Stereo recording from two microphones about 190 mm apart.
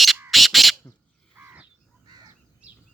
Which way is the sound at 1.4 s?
10° right (ahead or behind).